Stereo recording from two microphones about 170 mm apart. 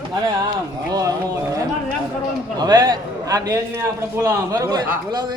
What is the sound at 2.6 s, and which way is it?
A man's voice, 25° right (ahead or behind).